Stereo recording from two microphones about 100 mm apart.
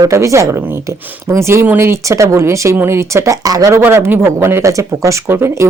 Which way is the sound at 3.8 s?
20° right (ahead or behind).